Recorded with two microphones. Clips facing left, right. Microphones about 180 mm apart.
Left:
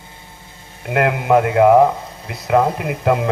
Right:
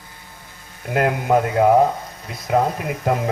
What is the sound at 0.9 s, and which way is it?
Speech, 70° left (ahead or behind).